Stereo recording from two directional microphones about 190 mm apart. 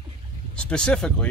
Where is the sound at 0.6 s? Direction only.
5° left (ahead or behind).